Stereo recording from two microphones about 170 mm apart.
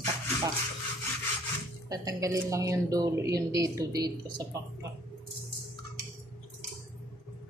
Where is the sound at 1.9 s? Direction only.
20° right (ahead or behind).